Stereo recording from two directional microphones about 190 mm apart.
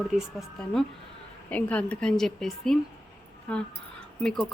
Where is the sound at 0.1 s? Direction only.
Centre (ahead or behind).